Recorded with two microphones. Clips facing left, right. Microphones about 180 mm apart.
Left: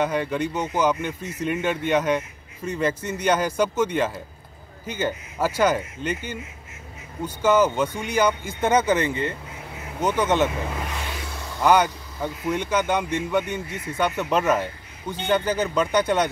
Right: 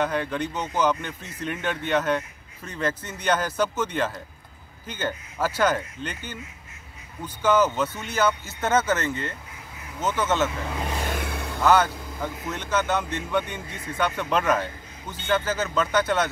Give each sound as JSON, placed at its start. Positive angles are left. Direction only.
{"t": 0.0, "sound": "a man's voice", "side_deg": 10}
{"t": 11.1, "sound": "vehicle", "side_deg": -55}
{"t": 11.6, "sound": "a man's voice", "side_deg": 15}